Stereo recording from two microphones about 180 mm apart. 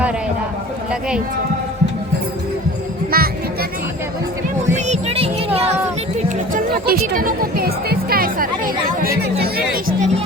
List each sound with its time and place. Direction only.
3.1 s music: 55° right (ahead or behind)
4.7 s music: 40° right (ahead or behind)
6.2 s music: 50° right (ahead or behind)